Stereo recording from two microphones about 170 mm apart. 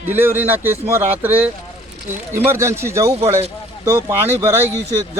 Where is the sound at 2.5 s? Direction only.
15° right (ahead or behind).